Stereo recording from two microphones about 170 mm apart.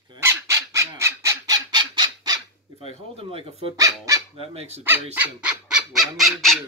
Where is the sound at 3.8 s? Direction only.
20° right (ahead or behind).